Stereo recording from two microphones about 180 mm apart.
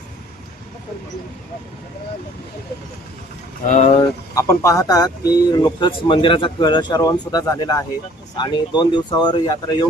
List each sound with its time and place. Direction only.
3.7 s speech: 40° left (ahead or behind)
4.4 s speech: 15° left (ahead or behind)